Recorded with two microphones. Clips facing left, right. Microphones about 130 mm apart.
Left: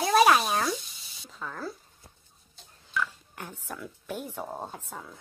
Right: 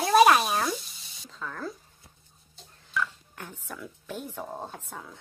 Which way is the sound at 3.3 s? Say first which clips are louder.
Left 1 dB; 10° left (ahead or behind).